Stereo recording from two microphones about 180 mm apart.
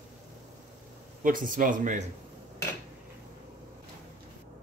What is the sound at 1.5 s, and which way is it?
Speech, 50° right (ahead or behind).